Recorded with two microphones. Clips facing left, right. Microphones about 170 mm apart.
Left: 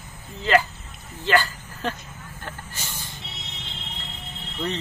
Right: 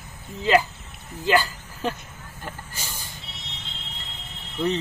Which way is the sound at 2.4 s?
10° right (ahead or behind).